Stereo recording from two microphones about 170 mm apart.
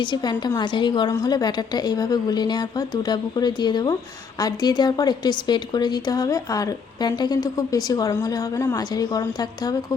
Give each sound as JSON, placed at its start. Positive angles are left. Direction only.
{"t": 0.0, "sound": "a woman's voice", "side_deg": 25}